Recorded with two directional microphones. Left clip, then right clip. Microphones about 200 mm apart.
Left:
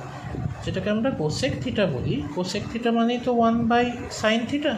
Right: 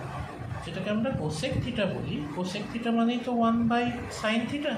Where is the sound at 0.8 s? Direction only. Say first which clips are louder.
Left 5 dB; 35° left (ahead or behind).